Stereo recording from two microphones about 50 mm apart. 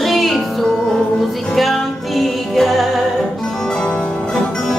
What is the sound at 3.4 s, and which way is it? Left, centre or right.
Music, centre.